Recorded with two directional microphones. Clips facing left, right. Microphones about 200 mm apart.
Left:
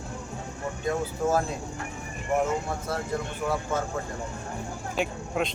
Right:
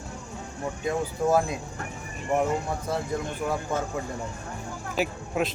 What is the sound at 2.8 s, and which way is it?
Speech, 15° right (ahead or behind).